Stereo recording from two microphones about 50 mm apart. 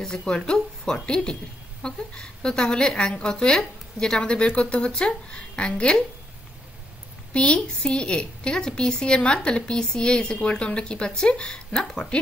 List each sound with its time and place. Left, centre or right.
0.0 s a woman's voice: centre
7.3 s a woman's voice: left